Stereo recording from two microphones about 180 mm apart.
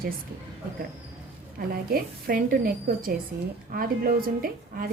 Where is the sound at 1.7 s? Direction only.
55° right (ahead or behind).